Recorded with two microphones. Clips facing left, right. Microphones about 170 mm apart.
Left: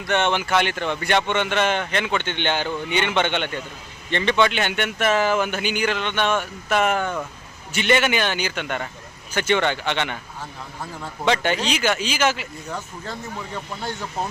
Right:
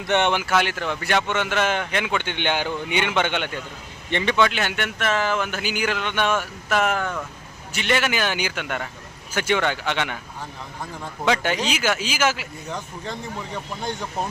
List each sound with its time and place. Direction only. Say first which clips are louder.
0.0 s speech: right 1 dB; 20° right (ahead or behind)
11.3 s speech: left 1 dB; 5° right (ahead or behind)